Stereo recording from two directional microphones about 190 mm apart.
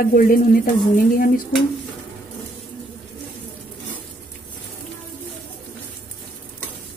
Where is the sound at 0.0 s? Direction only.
50° left (ahead or behind).